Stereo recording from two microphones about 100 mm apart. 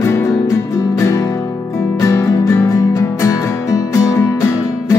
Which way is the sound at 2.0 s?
30° left (ahead or behind).